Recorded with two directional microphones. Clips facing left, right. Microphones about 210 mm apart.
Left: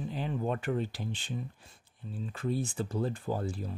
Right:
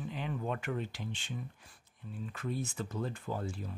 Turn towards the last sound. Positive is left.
turn(degrees=35)  # may be behind; listen again after turning